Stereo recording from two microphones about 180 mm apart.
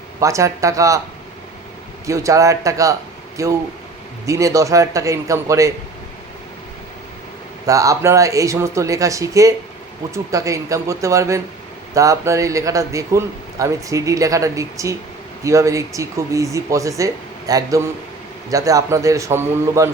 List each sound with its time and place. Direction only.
0.2 s a man's voice: 15° right (ahead or behind)
2.0 s a man's voice: 15° right (ahead or behind)
7.7 s a man's voice: 20° right (ahead or behind)